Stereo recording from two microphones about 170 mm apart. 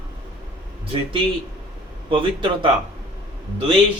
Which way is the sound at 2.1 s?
30° right (ahead or behind).